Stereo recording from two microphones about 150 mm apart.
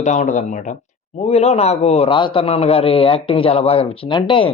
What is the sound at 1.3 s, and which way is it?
A man's voice, 45° left (ahead or behind).